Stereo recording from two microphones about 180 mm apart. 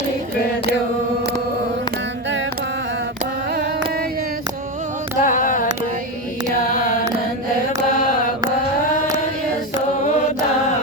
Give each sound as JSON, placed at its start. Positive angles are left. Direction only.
{"t": 5.2, "sound": "carnatic music", "side_deg": 50}